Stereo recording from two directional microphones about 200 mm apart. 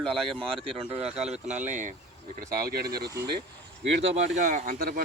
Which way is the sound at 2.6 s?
50° right (ahead or behind).